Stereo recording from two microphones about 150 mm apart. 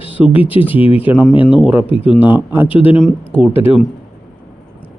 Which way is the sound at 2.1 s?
10° right (ahead or behind).